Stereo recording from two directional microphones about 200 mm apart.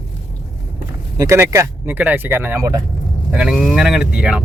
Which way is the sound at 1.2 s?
15° right (ahead or behind).